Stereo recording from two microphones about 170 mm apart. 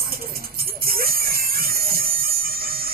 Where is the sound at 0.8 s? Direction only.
60° right (ahead or behind).